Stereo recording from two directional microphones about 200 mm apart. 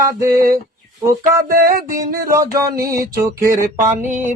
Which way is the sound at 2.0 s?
45° right (ahead or behind).